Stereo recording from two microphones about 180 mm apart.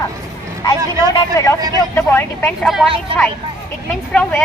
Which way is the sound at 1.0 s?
15° left (ahead or behind).